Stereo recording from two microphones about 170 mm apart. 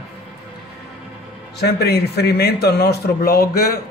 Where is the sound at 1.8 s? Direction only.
70° left (ahead or behind).